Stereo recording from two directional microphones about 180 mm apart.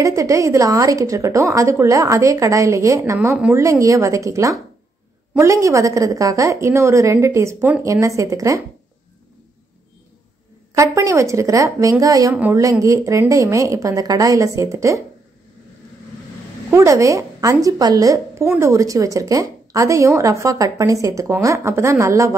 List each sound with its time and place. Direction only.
0.0 s a woman's voice: 20° right (ahead or behind)
3.6 s a woman's voice: 20° right (ahead or behind)
10.7 s a woman's voice: 15° right (ahead or behind)
16.7 s a woman's voice: 15° right (ahead or behind)